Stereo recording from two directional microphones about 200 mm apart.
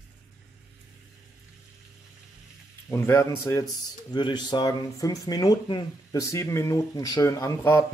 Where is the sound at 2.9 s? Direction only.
15° left (ahead or behind).